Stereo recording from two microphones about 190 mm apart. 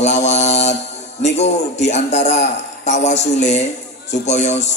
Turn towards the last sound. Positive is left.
turn(degrees=35)  # may be behind; listen again after turning